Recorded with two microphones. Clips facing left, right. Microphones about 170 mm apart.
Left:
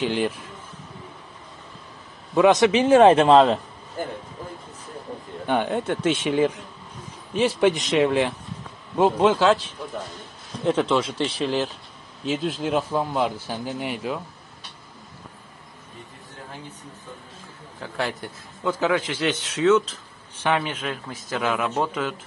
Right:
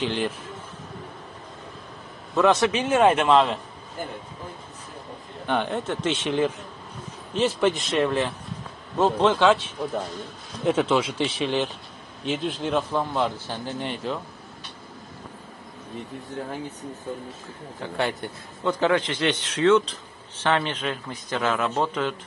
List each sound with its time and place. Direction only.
0.0 s a man's voice: 10° left (ahead or behind)
2.3 s a man's voice: 15° left (ahead or behind)
2.7 s speech: 30° left (ahead or behind)
5.5 s a man's voice: 10° left (ahead or behind)
10.6 s a man's voice: 5° right (ahead or behind)
17.8 s a man's voice: centre (ahead or behind)